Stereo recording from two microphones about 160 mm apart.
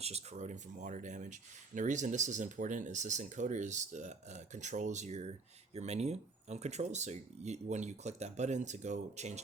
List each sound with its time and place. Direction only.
0.0 s speech: 40° right (ahead or behind)